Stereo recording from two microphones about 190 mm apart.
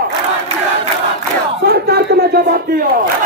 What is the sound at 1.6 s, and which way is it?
Speech, 55° right (ahead or behind).